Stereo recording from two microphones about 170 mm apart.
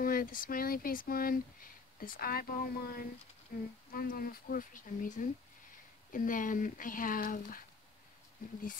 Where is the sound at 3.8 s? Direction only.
60° left (ahead or behind).